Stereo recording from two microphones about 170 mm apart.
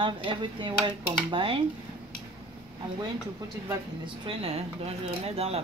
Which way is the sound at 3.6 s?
30° right (ahead or behind).